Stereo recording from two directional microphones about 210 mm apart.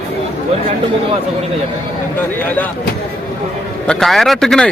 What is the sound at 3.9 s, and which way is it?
Speech, centre (ahead or behind).